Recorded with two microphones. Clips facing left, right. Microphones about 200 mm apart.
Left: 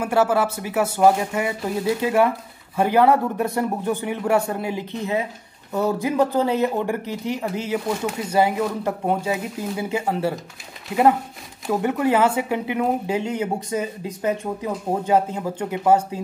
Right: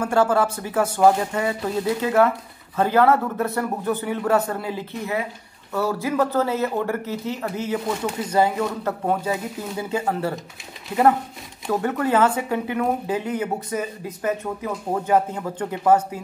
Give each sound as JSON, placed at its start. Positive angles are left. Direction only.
{"t": 0.0, "sound": "speech", "side_deg": 10}
{"t": 11.8, "sound": "speech", "side_deg": 15}